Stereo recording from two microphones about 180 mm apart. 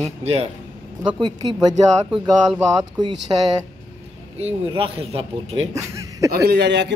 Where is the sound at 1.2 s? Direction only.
25° right (ahead or behind).